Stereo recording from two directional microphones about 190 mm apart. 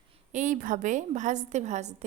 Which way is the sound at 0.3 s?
40° right (ahead or behind).